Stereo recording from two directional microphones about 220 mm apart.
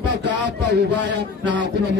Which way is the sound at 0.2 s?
50° right (ahead or behind).